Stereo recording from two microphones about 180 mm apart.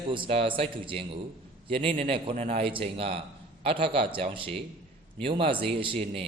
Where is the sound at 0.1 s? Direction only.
30° right (ahead or behind).